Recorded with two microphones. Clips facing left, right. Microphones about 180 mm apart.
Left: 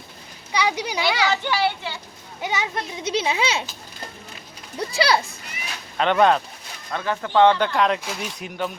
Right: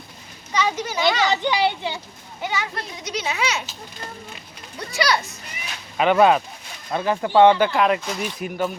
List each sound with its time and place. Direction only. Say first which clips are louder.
0.5 s a child's voice: even; 15° left (ahead or behind)
1.0 s a child's voice: right 3 dB; 20° right (ahead or behind)
2.4 s a child's voice: left 1 dB; 20° left (ahead or behind)
4.9 s a child's voice: left 1 dB; 30° left (ahead or behind)
6.0 s speech: right 2 dB; 5° right (ahead or behind)
6.9 s speech: right 3 dB; 20° right (ahead or behind); by 8.7 s centre (ahead or behind)